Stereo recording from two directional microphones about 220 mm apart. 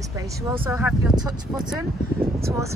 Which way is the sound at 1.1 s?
20° right (ahead or behind).